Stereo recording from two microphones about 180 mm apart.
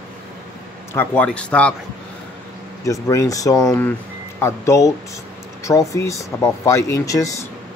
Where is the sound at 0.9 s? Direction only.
10° left (ahead or behind).